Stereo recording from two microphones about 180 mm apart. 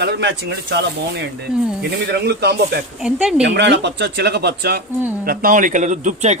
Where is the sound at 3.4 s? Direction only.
75° right (ahead or behind).